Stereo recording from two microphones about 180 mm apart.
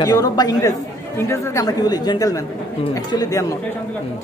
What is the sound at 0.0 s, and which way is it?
A woman's voice, 20° left (ahead or behind).